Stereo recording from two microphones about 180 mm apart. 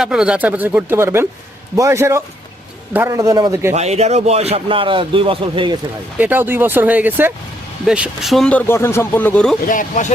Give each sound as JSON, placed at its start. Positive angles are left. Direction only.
{"t": 0.0, "sound": "speech", "side_deg": -5}
{"t": 3.8, "sound": "speech", "side_deg": -35}
{"t": 6.1, "sound": "speech", "side_deg": -10}
{"t": 9.6, "sound": "speech", "side_deg": 45}